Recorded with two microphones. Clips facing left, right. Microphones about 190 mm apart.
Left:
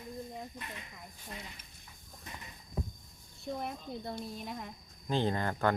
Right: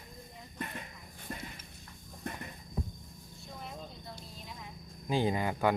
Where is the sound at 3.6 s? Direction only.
60° left (ahead or behind).